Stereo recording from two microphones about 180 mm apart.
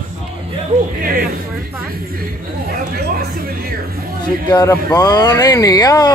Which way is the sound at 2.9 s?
55° right (ahead or behind).